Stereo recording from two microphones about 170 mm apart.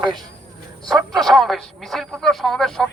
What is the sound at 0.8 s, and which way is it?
A man's voice, centre (ahead or behind).